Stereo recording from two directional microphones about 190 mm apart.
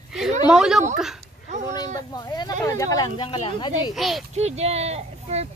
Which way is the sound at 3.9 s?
Centre (ahead or behind).